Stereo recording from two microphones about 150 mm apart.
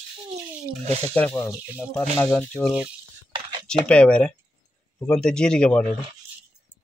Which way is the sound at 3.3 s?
30° right (ahead or behind).